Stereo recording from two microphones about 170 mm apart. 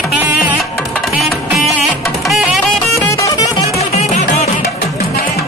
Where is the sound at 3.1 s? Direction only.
20° left (ahead or behind).